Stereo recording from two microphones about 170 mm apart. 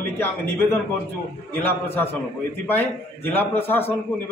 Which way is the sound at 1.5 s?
10° left (ahead or behind).